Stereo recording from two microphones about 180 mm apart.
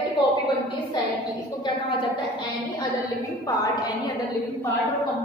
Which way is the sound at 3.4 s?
20° left (ahead or behind).